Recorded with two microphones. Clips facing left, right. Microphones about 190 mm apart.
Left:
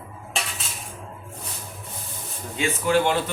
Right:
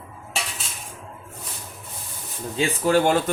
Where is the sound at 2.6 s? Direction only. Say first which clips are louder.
Right 2 dB; 35° right (ahead or behind).